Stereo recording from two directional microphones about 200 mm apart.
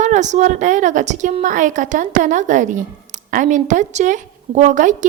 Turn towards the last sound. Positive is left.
turn(degrees=-40)  # may be behind; listen again after turning